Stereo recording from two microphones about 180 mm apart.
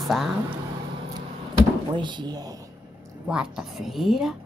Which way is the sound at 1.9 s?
25° right (ahead or behind).